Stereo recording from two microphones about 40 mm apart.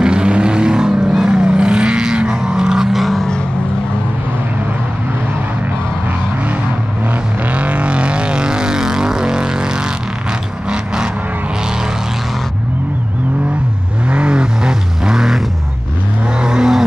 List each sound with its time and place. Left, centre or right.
0.0 s vehicle: right
2.9 s vehicle: centre
7.5 s vehicle: right; by 9.7 s centre
14.0 s vehicle: right